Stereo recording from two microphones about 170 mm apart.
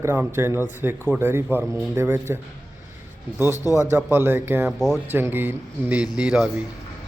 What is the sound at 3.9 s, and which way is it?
A man's voice, 15° right (ahead or behind).